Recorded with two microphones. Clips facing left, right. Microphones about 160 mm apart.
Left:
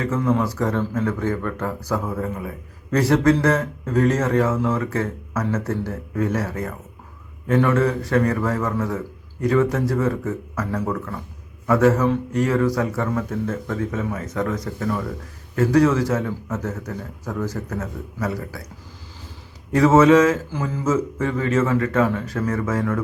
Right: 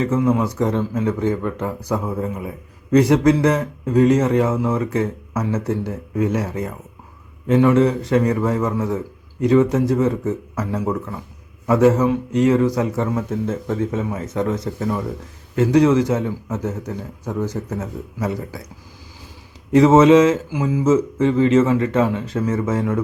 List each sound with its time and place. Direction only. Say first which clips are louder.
0.0 s a man's voice: right 3 dB; 20° right (ahead or behind)
19.7 s a man's voice: right 3 dB; 20° right (ahead or behind)